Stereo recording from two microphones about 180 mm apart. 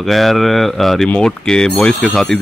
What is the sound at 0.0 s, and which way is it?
A man's voice, centre (ahead or behind).